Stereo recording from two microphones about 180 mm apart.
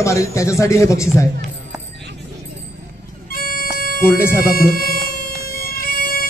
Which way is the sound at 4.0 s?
15° left (ahead or behind).